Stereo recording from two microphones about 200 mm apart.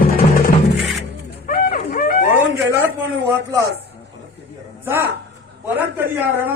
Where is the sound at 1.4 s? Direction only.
45° left (ahead or behind).